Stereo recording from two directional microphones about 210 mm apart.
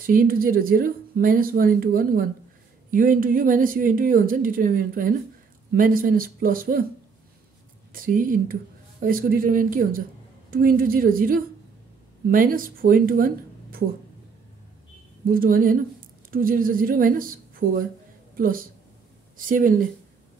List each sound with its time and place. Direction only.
0.0 s speech: 45° right (ahead or behind)
7.9 s speech: 40° right (ahead or behind)
15.2 s a woman's voice: 45° right (ahead or behind)